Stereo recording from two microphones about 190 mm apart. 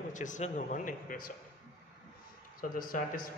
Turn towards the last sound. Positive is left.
turn(degrees=45)  # may be behind; listen again after turning